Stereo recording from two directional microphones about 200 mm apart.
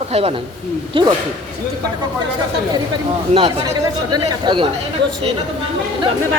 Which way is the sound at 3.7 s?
20° right (ahead or behind).